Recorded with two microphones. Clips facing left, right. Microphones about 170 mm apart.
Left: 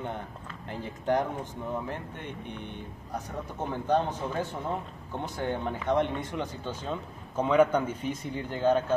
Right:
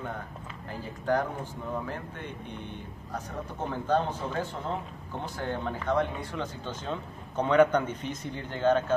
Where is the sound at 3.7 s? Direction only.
15° left (ahead or behind).